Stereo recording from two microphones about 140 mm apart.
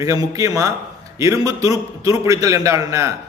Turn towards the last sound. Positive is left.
turn(degrees=-25)  # may be behind; listen again after turning